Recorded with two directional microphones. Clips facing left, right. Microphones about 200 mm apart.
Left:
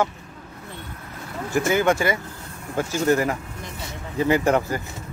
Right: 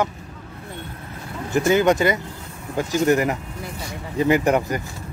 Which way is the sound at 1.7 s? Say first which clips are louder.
Right 2 dB; 20° right (ahead or behind).